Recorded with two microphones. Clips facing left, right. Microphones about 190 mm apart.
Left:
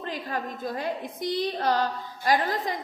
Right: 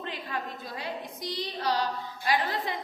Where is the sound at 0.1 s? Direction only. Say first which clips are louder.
Left 7 dB; 45° left (ahead or behind).